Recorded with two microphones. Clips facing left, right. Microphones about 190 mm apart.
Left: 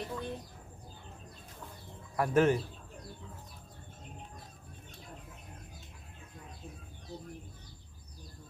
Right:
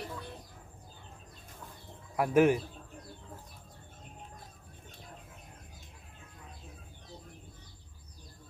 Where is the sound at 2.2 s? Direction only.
10° right (ahead or behind).